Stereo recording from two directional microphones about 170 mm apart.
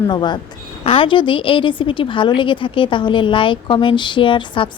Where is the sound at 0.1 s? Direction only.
25° left (ahead or behind).